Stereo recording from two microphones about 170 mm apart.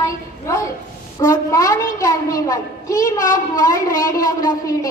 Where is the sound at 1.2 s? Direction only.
20° left (ahead or behind).